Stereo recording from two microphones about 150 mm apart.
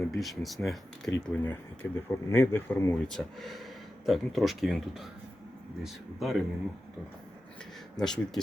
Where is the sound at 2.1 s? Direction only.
15° left (ahead or behind).